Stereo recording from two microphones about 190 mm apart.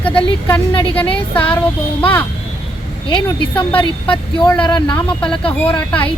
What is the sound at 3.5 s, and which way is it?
Speech, 10° left (ahead or behind).